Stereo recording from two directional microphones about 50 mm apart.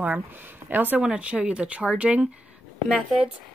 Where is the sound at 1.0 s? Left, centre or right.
Right.